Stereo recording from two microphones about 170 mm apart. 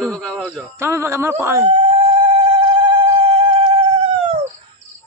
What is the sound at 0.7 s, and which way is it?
Speech, 15° right (ahead or behind).